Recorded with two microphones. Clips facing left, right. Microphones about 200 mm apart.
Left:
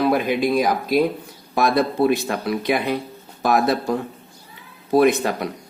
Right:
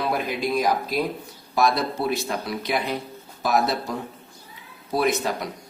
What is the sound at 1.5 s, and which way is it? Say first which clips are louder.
Speech: left 4 dB; 55° left (ahead or behind).